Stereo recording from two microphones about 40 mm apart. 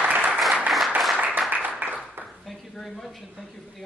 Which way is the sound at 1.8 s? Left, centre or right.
Right.